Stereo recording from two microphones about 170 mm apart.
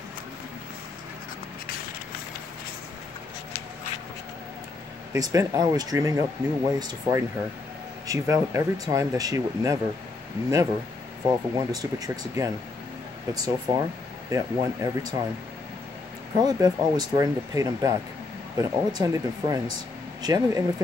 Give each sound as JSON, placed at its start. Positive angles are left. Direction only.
{"t": 5.1, "sound": "speech", "side_deg": -20}
{"t": 11.2, "sound": "speech", "side_deg": -20}
{"t": 16.4, "sound": "speech", "side_deg": -25}